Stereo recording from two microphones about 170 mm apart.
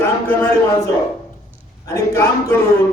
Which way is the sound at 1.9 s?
15° left (ahead or behind).